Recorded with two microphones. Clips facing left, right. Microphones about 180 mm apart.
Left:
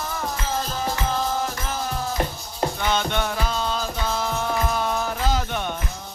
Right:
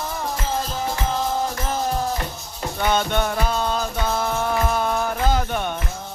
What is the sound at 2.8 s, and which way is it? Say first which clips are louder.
Music: right 6 dB; 50° right (ahead or behind).